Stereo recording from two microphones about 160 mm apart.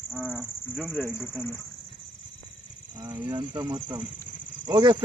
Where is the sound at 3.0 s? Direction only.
30° right (ahead or behind).